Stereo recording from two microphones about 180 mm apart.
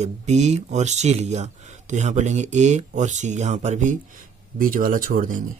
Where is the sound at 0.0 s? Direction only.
40° right (ahead or behind).